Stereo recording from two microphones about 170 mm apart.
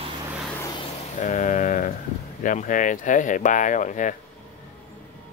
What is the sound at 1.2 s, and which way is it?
Speech, 45° left (ahead or behind).